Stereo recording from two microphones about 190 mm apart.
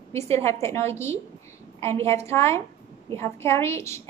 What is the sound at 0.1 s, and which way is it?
A woman's voice, 15° left (ahead or behind).